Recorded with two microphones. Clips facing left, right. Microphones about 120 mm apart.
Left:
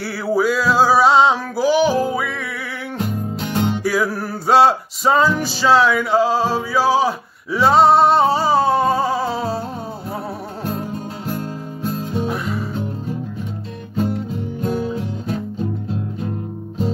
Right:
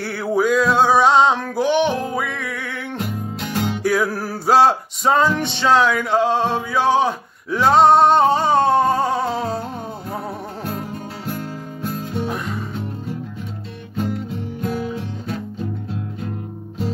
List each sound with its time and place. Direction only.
0.0 s male singing: centre (ahead or behind)
3.8 s music: centre (ahead or behind)
11.9 s music: 35° left (ahead or behind)
12.3 s music: centre (ahead or behind)
14.6 s music: 30° left (ahead or behind)